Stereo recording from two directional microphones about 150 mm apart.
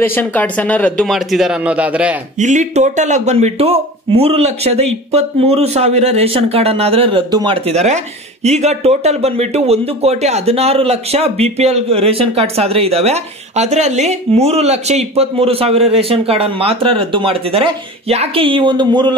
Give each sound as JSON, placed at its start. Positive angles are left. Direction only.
{"t": 0.0, "sound": "speech", "side_deg": 15}
{"t": 2.3, "sound": "speech", "side_deg": -55}